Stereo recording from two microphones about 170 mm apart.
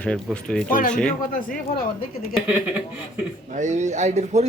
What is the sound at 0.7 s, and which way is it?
Speech, 55° left (ahead or behind).